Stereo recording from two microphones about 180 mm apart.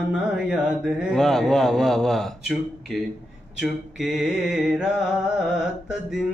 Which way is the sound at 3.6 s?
Centre (ahead or behind).